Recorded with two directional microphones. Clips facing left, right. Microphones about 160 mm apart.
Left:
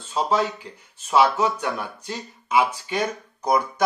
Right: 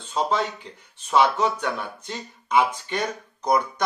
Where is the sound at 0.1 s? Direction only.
5° left (ahead or behind).